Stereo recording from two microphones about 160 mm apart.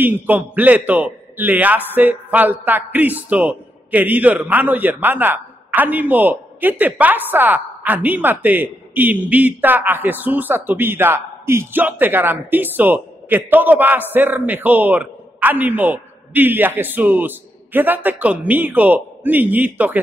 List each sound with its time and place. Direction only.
0.0 s a man's voice: 10° right (ahead or behind)